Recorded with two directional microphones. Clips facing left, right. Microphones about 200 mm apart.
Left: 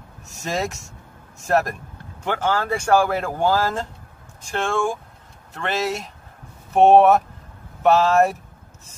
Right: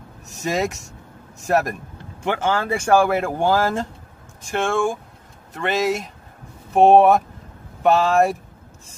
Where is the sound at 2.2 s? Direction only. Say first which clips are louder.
Right 1 dB; 15° right (ahead or behind).